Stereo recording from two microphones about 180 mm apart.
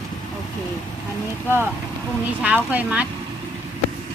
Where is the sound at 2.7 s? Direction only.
10° right (ahead or behind).